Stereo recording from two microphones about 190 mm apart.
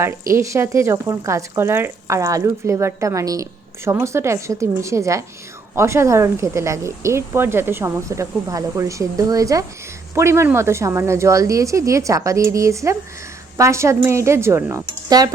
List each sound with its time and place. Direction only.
0.0 s speech: 15° right (ahead or behind)